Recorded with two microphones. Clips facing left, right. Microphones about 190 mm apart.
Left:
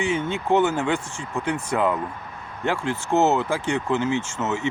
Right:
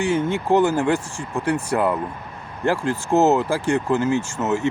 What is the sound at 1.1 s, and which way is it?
Speech, 10° right (ahead or behind).